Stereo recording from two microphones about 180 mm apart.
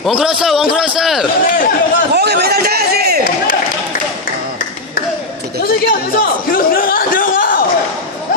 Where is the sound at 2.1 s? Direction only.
65° right (ahead or behind).